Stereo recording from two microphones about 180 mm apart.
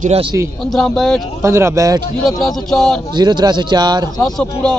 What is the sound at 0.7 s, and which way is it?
Speech, centre (ahead or behind).